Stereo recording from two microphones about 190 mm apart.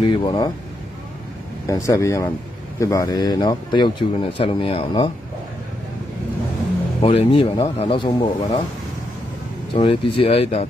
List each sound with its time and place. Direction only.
0.0 s speech: 25° left (ahead or behind)
1.7 s speech: 15° left (ahead or behind)
7.0 s speech: 30° left (ahead or behind)
9.8 s speech: 30° left (ahead or behind)